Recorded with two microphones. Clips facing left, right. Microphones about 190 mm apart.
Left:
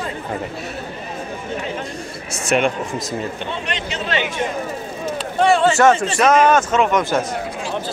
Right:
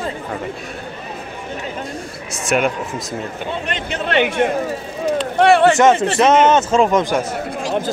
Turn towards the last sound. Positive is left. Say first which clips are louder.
# right 2 dB
turn(degrees=-30)  # may be behind; listen again after turning